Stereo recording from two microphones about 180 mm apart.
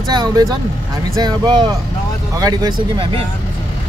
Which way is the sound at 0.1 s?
20° right (ahead or behind).